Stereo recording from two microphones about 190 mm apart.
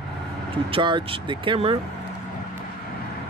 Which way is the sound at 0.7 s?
25° right (ahead or behind).